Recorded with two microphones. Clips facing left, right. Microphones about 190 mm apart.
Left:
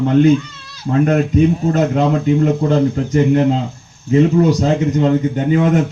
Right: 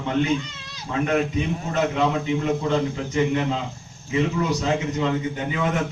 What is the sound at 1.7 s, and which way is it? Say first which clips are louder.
A man's voice: left 7 dB; 45° left (ahead or behind).